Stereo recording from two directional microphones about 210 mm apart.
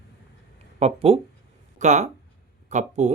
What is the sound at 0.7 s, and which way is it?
Speech, 30° right (ahead or behind).